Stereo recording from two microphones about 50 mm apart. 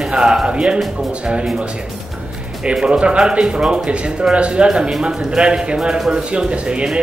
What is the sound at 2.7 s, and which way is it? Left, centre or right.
Speech, centre.